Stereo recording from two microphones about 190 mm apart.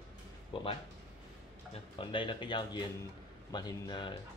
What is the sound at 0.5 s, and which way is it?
Speech, 25° left (ahead or behind).